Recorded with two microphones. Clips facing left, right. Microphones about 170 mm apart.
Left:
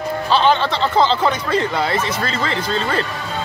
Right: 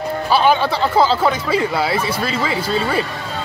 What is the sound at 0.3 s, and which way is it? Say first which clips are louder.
A man's voice: right 1 dB; 10° right (ahead or behind).